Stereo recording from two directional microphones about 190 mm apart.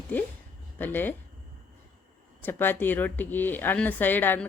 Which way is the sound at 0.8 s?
10° left (ahead or behind).